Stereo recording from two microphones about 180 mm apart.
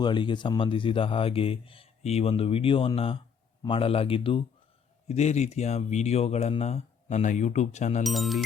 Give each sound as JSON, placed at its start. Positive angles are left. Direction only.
{"t": 0.0, "sound": "speech", "side_deg": 25}
{"t": 8.0, "sound": "speech", "side_deg": 0}